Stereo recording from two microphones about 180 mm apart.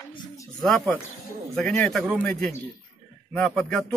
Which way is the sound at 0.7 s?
Centre (ahead or behind).